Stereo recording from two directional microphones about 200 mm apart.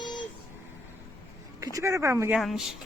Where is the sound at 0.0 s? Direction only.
20° left (ahead or behind).